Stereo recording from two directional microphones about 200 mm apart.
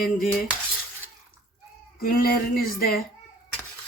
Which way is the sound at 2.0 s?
45° left (ahead or behind).